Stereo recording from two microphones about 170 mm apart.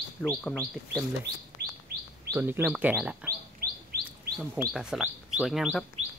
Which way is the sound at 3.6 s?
65° right (ahead or behind).